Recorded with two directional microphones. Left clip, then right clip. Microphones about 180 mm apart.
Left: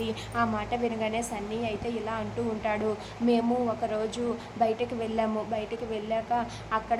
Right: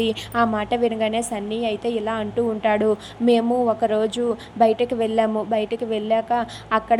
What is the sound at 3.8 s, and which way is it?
A woman's voice, 30° right (ahead or behind).